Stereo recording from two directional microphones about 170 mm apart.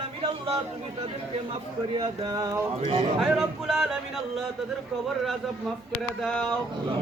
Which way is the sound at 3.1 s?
Centre (ahead or behind).